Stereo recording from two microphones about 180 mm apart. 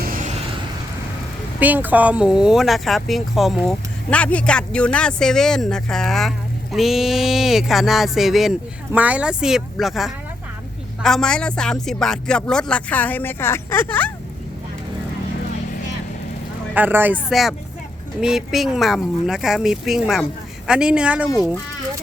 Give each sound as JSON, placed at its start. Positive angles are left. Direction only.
{"t": 0.0, "sound": "vehicle", "side_deg": -50}
{"t": 1.5, "sound": "speech", "side_deg": -10}
{"t": 16.7, "sound": "speech", "side_deg": -10}